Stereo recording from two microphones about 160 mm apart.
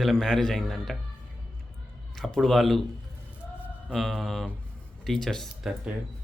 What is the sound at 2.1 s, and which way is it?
Speech, 5° left (ahead or behind).